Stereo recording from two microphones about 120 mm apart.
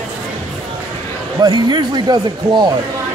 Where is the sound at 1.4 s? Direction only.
40° right (ahead or behind).